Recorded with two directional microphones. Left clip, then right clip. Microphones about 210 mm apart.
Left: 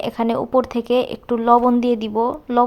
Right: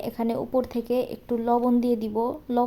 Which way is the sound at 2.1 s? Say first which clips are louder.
Left 7 dB; 25° left (ahead or behind).